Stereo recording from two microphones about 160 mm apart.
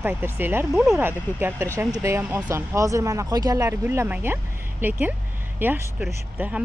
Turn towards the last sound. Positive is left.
turn(degrees=-10)  # may be behind; listen again after turning